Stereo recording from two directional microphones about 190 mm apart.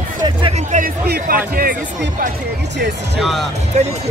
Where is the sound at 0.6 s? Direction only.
50° right (ahead or behind).